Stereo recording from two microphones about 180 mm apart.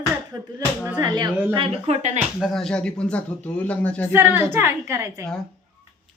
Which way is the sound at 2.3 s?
Centre (ahead or behind).